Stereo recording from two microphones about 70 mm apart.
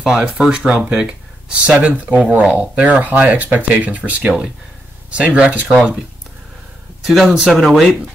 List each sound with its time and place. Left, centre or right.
0.0 s speech: centre
7.1 s speech: centre